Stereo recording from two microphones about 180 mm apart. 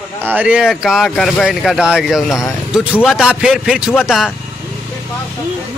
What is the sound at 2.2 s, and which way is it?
Speech, 15° left (ahead or behind).